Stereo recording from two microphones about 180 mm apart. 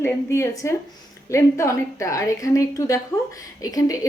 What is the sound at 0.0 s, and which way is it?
A woman's voice, 15° left (ahead or behind).